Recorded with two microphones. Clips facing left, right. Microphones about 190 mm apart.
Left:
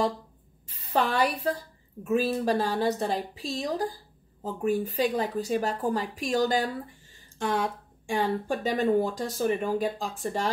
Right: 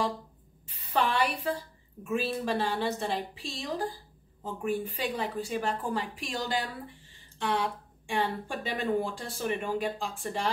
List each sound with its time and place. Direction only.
0.7 s a woman's voice: 40° left (ahead or behind)